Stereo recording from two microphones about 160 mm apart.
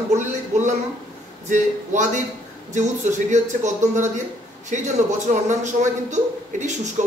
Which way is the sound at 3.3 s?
50° right (ahead or behind).